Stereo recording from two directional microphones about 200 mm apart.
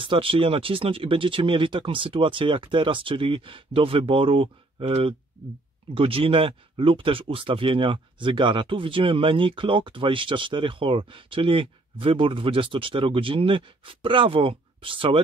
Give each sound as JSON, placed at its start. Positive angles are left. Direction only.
{"t": 0.0, "sound": "speech", "side_deg": -25}